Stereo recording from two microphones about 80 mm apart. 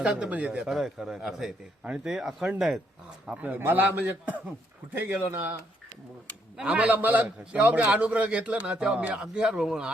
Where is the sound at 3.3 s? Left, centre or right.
Right.